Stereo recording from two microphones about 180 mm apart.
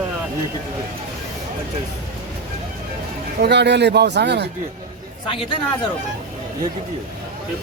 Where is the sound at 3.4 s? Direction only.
70° right (ahead or behind).